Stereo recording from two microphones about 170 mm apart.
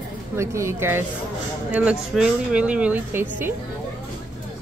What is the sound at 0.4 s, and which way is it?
Speech, 15° right (ahead or behind).